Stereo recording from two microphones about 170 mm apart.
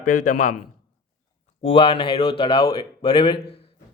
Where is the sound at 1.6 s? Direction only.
35° left (ahead or behind).